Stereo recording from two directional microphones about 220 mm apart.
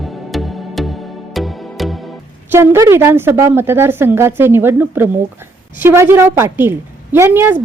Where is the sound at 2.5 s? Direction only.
10° right (ahead or behind).